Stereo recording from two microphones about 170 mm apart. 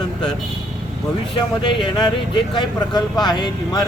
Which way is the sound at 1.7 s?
30° left (ahead or behind).